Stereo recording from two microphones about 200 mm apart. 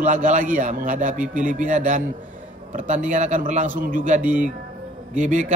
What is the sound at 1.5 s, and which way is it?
Speech, 40° right (ahead or behind).